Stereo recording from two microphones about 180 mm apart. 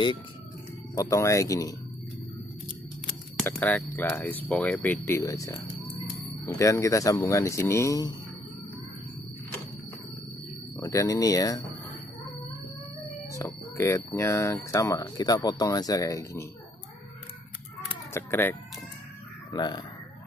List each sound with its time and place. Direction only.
0.9 s speech: 20° left (ahead or behind)
3.4 s speech: 10° left (ahead or behind)
10.8 s speech: 15° left (ahead or behind)
13.3 s speech: 15° left (ahead or behind)
18.1 s speech: 10° left (ahead or behind)
19.5 s speech: 25° left (ahead or behind)